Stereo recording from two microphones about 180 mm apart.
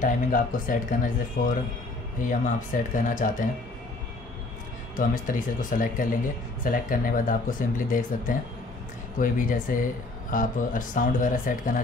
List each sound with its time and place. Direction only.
0.0 s speech: 50° left (ahead or behind)
4.9 s speech: 50° left (ahead or behind)